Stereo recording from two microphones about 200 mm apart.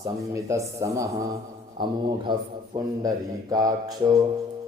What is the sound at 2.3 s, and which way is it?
Speech, 20° right (ahead or behind).